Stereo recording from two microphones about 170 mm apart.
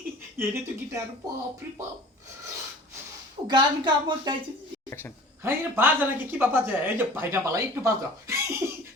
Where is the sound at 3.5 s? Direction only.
25° right (ahead or behind).